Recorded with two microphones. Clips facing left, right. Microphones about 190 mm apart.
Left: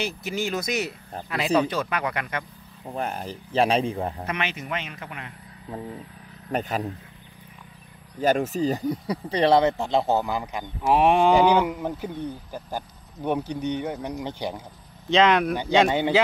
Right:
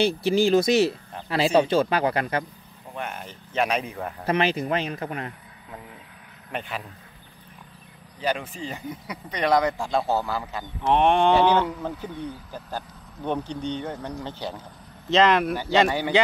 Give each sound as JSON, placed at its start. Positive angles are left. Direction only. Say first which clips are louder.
{"t": 0.0, "sound": "a man's voice", "louder": "right 8 dB", "side_deg": -30}
{"t": 2.9, "sound": "speech", "louder": "left 4 dB", "side_deg": 35}
{"t": 4.3, "sound": "a man's voice", "louder": "right 7 dB", "side_deg": -35}
{"t": 5.7, "sound": "speech", "louder": "left 8 dB", "side_deg": 35}
{"t": 8.2, "sound": "speech", "louder": "left 6 dB", "side_deg": 45}
{"t": 10.9, "sound": "speech", "louder": "left 1 dB", "side_deg": 5}
{"t": 15.0, "sound": "speech", "louder": "even", "side_deg": 0}